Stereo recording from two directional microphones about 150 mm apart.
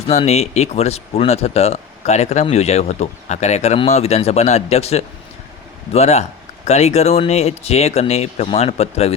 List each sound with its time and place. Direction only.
0.1 s speech: 45° left (ahead or behind)